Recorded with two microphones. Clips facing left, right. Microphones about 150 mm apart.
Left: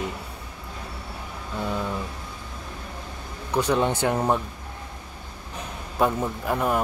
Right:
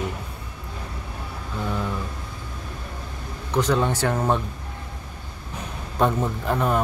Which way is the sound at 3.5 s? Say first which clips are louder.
Even; 15° left (ahead or behind).